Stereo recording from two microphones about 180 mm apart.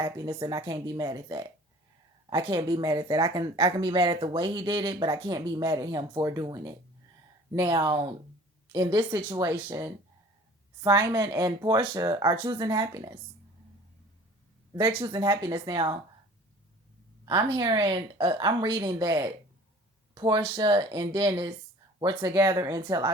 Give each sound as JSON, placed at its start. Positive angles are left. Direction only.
{"t": 0.0, "sound": "a woman's voice", "side_deg": -20}
{"t": 14.7, "sound": "a woman's voice", "side_deg": -25}
{"t": 17.6, "sound": "a woman's voice", "side_deg": -20}